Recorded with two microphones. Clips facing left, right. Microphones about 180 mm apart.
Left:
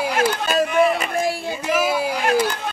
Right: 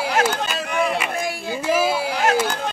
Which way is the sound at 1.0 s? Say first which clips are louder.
Left 3 dB; 30° left (ahead or behind).